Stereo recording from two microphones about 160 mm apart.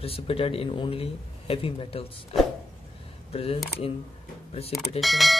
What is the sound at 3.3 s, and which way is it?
Speech, 40° left (ahead or behind).